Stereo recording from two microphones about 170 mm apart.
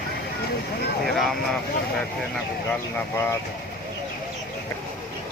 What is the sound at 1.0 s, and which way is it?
Vehicle, centre (ahead or behind).